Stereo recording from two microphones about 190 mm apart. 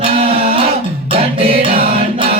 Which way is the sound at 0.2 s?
30° right (ahead or behind).